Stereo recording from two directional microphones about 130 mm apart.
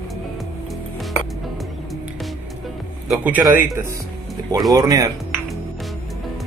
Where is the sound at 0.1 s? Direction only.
Centre (ahead or behind).